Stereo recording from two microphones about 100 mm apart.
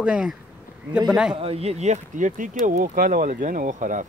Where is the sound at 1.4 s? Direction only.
85° right.